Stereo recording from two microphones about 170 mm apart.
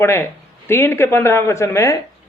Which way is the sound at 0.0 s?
15° left (ahead or behind).